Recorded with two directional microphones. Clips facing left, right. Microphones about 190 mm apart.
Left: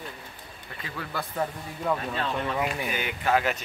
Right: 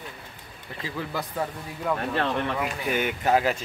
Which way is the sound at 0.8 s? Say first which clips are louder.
Right 5 dB; 25° right (ahead or behind).